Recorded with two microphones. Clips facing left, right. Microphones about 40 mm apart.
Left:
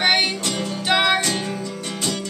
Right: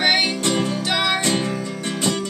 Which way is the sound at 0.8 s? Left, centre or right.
Centre.